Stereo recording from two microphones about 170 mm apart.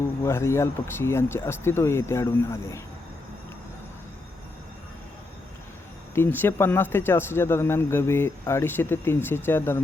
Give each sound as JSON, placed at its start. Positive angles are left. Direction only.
{"t": 0.3, "sound": "speech", "side_deg": 15}
{"t": 6.1, "sound": "speech", "side_deg": 10}